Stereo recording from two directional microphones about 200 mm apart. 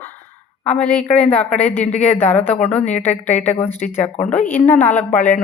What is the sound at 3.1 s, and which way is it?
Speech, 35° left (ahead or behind).